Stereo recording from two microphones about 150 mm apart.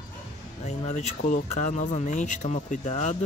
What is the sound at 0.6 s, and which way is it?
Speech, 50° left (ahead or behind).